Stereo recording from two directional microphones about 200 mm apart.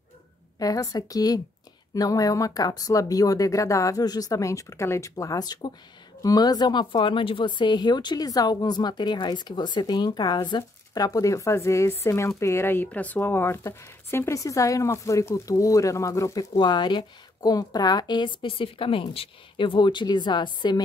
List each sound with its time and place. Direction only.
0.6 s speech: 20° left (ahead or behind)